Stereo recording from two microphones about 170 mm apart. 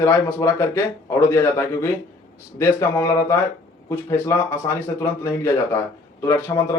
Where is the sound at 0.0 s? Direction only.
15° left (ahead or behind).